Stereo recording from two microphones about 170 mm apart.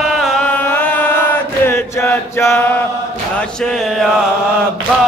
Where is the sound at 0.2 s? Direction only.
5° left (ahead or behind).